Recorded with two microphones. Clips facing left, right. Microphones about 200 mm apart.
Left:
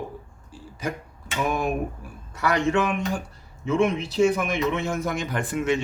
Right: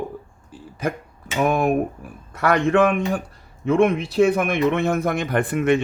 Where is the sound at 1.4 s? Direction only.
55° right (ahead or behind).